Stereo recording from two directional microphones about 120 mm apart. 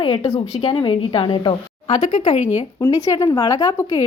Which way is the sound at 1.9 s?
90° left.